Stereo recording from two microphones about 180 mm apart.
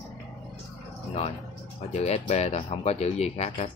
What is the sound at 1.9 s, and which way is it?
Speech, 40° left (ahead or behind).